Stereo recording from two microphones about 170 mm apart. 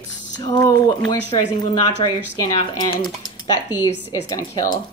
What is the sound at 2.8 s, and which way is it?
Speech, 25° left (ahead or behind).